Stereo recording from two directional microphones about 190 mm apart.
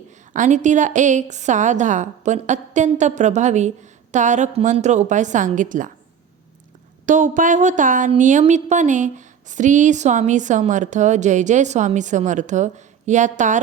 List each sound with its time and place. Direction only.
0.3 s speech: 40° right (ahead or behind)
7.0 s speech: 40° right (ahead or behind)